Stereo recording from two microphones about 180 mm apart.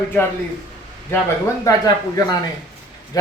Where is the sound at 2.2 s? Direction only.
20° left (ahead or behind).